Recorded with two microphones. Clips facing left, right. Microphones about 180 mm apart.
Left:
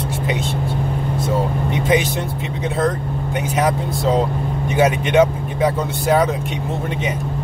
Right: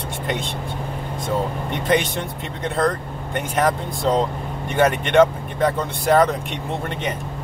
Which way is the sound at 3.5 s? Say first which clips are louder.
Left 1 dB; centre (ahead or behind).